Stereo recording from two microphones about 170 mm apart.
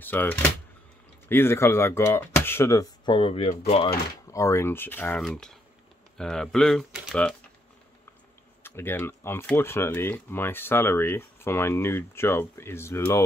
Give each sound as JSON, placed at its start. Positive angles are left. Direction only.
{"t": 0.0, "sound": "speech", "side_deg": 10}
{"t": 3.2, "sound": "speech", "side_deg": 35}
{"t": 4.3, "sound": "speech", "side_deg": 15}
{"t": 8.6, "sound": "speech", "side_deg": 15}